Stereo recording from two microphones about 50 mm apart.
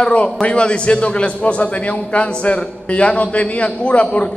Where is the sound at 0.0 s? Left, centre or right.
Left.